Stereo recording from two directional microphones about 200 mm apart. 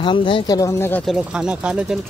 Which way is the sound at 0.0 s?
25° left (ahead or behind).